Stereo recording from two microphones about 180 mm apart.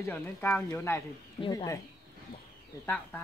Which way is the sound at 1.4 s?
25° left (ahead or behind).